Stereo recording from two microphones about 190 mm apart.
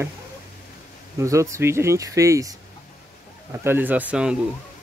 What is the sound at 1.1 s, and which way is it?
Speech, 15° right (ahead or behind).